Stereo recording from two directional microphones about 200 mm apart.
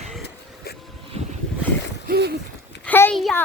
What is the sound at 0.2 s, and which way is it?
Vehicle, 50° left (ahead or behind).